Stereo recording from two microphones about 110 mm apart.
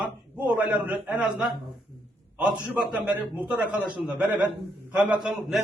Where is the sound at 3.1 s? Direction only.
15° right (ahead or behind).